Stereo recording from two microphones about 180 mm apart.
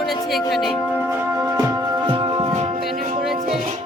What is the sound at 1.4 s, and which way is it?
Music, 20° right (ahead or behind).